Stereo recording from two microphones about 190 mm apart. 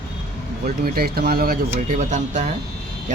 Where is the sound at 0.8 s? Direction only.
50° right (ahead or behind).